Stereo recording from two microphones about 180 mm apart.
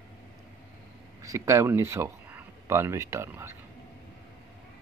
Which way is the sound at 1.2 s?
15° right (ahead or behind).